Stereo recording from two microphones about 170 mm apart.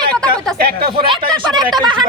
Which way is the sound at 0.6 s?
65° right (ahead or behind).